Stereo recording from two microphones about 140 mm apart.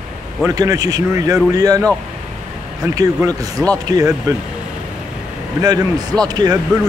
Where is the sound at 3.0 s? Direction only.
25° right (ahead or behind).